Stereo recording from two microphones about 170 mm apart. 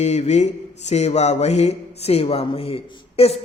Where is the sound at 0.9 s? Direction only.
40° left (ahead or behind).